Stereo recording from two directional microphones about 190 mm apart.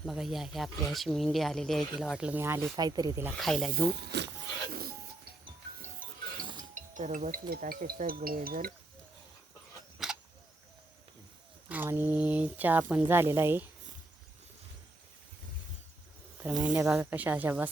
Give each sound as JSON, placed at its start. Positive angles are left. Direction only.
{"t": 0.0, "sound": "speech", "side_deg": 0}
{"t": 3.3, "sound": "speech", "side_deg": 0}
{"t": 4.1, "sound": "speech", "side_deg": -65}
{"t": 4.7, "sound": "music", "side_deg": -50}
{"t": 6.7, "sound": "speech", "side_deg": -40}
{"t": 10.0, "sound": "a sound", "side_deg": 0}
{"t": 11.7, "sound": "speech", "side_deg": -10}
{"t": 16.8, "sound": "speech", "side_deg": -5}